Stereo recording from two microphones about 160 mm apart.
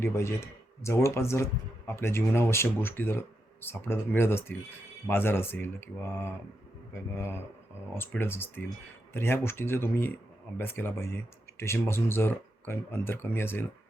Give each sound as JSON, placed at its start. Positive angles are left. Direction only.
{"t": 0.0, "sound": "speech", "side_deg": 15}